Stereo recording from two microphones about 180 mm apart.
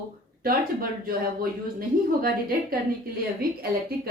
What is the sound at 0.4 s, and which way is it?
A woman's voice, 55° right (ahead or behind).